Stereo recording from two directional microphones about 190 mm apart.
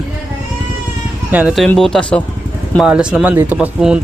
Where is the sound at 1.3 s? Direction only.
5° right (ahead or behind).